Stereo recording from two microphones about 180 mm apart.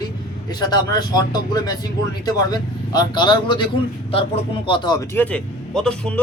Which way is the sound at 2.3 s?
20° left (ahead or behind).